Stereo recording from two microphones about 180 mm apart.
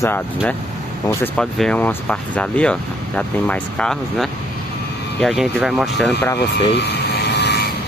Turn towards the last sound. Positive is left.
turn(degrees=70)  # may be behind; listen again after turning